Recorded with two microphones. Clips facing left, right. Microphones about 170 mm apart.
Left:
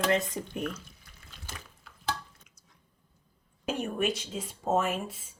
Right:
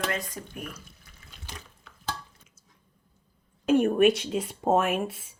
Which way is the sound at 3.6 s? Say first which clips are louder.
Right 10 dB; 60° right (ahead or behind).